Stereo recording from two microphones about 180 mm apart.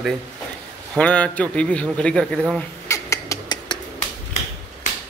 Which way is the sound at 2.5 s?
15° left (ahead or behind).